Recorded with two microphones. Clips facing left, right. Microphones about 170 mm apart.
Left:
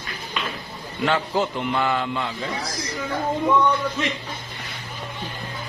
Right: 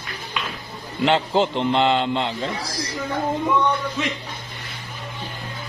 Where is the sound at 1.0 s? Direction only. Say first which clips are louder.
Right 3 dB; 25° right (ahead or behind).